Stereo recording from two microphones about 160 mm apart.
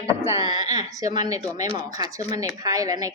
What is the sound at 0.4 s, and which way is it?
A woman's voice, 25° right (ahead or behind).